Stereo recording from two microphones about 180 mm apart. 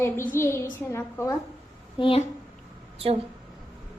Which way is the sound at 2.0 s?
25° left (ahead or behind).